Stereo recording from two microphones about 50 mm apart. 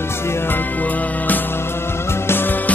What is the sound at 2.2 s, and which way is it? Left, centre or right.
Music, left.